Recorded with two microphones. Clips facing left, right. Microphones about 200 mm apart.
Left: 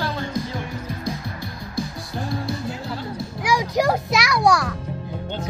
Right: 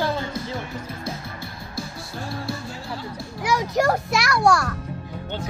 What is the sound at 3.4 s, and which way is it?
A child's voice, 10° left (ahead or behind).